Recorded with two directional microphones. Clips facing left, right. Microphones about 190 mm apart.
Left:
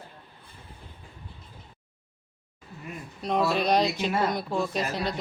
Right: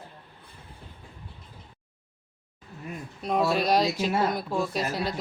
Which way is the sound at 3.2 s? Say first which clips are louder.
Even; 5° right (ahead or behind).